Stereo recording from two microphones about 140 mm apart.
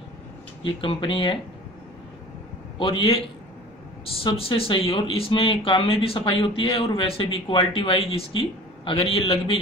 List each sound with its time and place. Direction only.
0.7 s speech: 35° left (ahead or behind)
2.8 s speech: 40° left (ahead or behind)
4.2 s speech: 40° left (ahead or behind)